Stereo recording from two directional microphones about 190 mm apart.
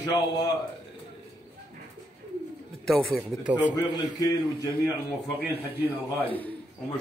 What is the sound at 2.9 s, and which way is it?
Speech, centre (ahead or behind).